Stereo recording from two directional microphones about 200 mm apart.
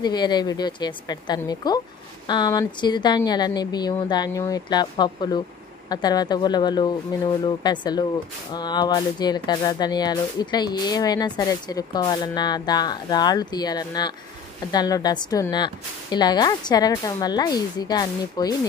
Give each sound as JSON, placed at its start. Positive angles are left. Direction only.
{"t": 0.0, "sound": "speech", "side_deg": 20}